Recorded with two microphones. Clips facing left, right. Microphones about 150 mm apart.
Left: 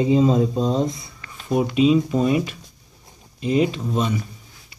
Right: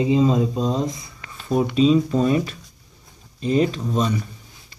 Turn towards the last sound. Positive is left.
turn(degrees=10)  # may be behind; listen again after turning